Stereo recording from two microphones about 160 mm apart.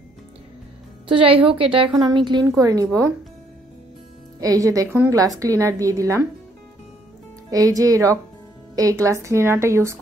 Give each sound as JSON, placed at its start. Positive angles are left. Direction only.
{"t": 1.0, "sound": "a woman's voice", "side_deg": -35}
{"t": 4.4, "sound": "a woman's voice", "side_deg": -20}
{"t": 7.5, "sound": "a woman's voice", "side_deg": -20}